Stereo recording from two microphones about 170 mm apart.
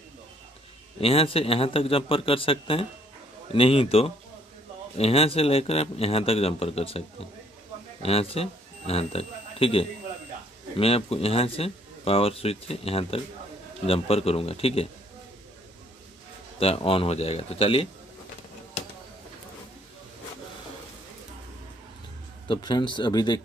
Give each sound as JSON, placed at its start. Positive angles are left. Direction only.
{"t": 1.0, "sound": "speech", "side_deg": 35}
{"t": 16.5, "sound": "speech", "side_deg": 35}
{"t": 22.5, "sound": "speech", "side_deg": 25}